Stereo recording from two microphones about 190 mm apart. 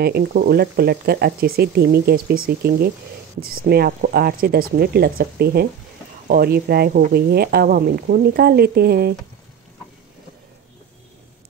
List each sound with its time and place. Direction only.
0.0 s speech: 55° right (ahead or behind)